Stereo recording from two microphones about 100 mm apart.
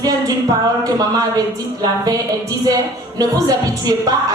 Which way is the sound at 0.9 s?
40° right (ahead or behind).